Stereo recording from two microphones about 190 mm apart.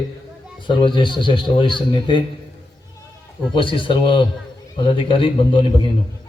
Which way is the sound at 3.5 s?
25° left (ahead or behind).